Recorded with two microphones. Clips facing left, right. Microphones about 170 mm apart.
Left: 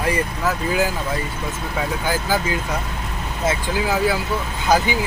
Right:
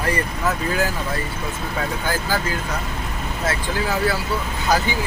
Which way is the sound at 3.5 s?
15° left (ahead or behind).